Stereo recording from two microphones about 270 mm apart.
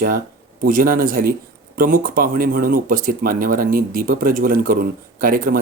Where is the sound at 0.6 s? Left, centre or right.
Right.